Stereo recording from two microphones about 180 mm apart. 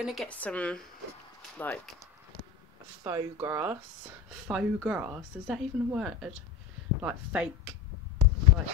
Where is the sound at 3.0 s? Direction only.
20° right (ahead or behind).